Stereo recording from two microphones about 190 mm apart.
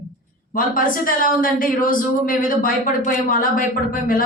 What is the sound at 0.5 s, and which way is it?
A woman's voice, 45° left (ahead or behind).